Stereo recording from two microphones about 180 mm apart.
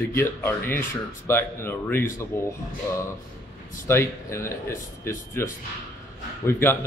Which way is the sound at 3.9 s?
15° left (ahead or behind).